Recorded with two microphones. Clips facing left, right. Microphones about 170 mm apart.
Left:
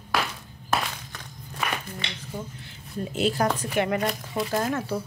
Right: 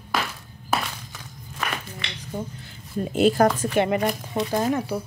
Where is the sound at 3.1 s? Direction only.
50° right (ahead or behind).